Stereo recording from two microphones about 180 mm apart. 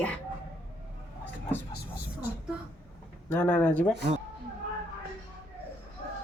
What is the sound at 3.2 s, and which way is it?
Speech, 5° left (ahead or behind).